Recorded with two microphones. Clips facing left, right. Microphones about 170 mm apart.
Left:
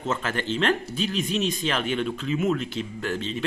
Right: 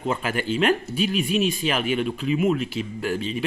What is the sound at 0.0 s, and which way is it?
Speech, 10° right (ahead or behind).